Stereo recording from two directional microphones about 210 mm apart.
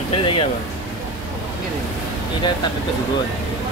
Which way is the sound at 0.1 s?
25° left (ahead or behind).